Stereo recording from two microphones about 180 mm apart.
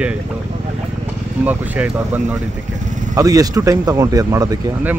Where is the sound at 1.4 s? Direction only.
10° right (ahead or behind).